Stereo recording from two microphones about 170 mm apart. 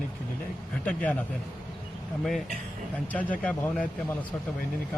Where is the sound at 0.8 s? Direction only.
10° left (ahead or behind).